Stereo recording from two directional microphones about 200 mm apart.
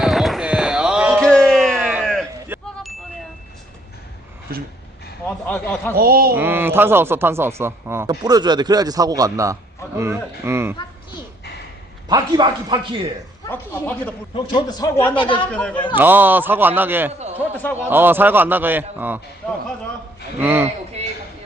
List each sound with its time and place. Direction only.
0.0 s a sound: centre (ahead or behind)
4.5 s a sound: 50° right (ahead or behind)
5.5 s speech: 10° left (ahead or behind)
5.9 s speech: 50° right (ahead or behind)
6.3 s speech: 10° right (ahead or behind)
12.0 s a man's voice: 20° right (ahead or behind)
13.5 s speech: 10° left (ahead or behind)
14.3 s speech: 20° left (ahead or behind)
15.4 s speech: 5° left (ahead or behind)
16.0 s speech: 10° right (ahead or behind)
20.4 s speech: 10° right (ahead or behind)